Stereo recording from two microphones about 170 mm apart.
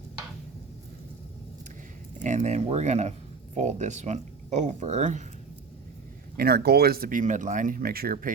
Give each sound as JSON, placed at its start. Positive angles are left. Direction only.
{"t": 2.1, "sound": "speech", "side_deg": -45}
{"t": 6.3, "sound": "speech", "side_deg": -65}